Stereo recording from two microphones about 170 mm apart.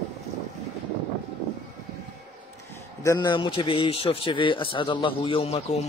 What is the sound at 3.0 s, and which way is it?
Speech, 20° left (ahead or behind).